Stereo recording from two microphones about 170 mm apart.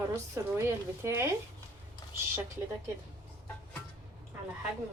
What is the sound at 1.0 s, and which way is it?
Speech, 15° right (ahead or behind).